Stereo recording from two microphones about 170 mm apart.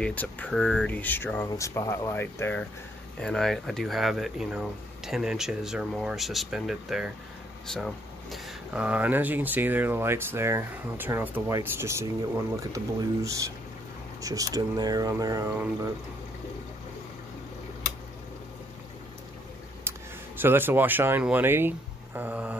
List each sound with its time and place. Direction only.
0.0 s speech: 10° left (ahead or behind); by 15.9 s 20° right (ahead or behind)
20.3 s speech: 10° right (ahead or behind)